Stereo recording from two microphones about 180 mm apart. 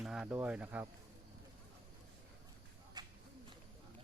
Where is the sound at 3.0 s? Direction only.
20° right (ahead or behind).